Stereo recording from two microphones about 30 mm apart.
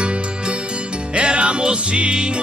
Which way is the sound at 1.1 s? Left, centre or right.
Right.